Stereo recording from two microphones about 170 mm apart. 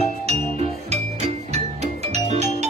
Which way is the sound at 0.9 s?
40° right (ahead or behind).